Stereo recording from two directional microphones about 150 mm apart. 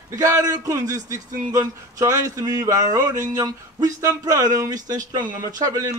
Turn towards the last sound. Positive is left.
turn(degrees=-25)  # may be behind; listen again after turning